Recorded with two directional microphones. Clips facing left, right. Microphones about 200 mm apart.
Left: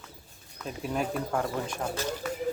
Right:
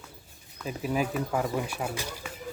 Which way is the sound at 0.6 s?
5° right (ahead or behind).